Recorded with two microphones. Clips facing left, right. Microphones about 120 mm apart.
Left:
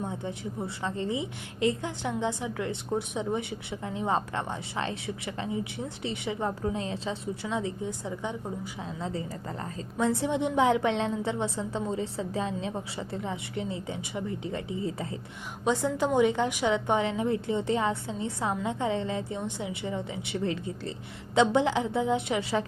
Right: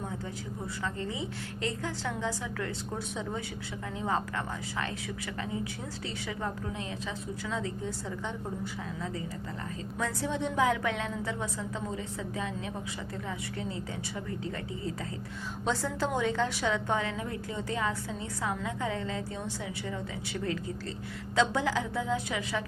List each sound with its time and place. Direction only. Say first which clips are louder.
0.0 s a woman's voice: left 4 dB; 25° left (ahead or behind)
9.0 s a woman's voice: left 5 dB; 25° left (ahead or behind)